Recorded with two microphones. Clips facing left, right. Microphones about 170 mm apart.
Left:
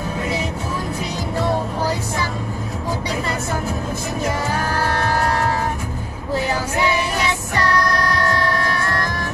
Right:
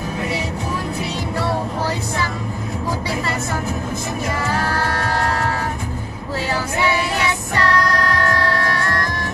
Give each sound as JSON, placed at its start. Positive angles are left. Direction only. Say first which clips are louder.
{"t": 7.5, "sound": "music", "louder": "right 1 dB", "side_deg": 15}